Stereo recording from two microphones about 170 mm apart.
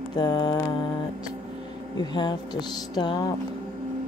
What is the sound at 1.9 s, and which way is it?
Speech, 25° left (ahead or behind).